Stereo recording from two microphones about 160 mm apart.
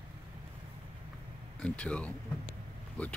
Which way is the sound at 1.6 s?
5° left (ahead or behind).